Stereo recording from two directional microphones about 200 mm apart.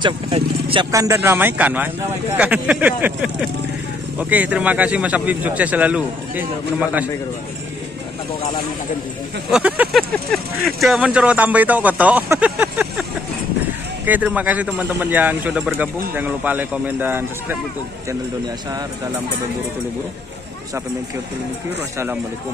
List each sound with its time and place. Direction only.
0.0 s speech: 25° right (ahead or behind)
0.9 s speech: 15° right (ahead or behind)
9.5 s speech: 5° right (ahead or behind)
14.0 s speech: 10° right (ahead or behind)